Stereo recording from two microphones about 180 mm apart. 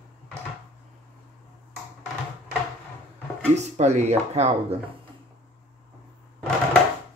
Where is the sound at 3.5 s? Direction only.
40° right (ahead or behind).